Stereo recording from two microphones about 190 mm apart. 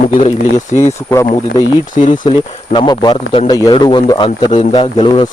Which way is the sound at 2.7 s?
25° left (ahead or behind).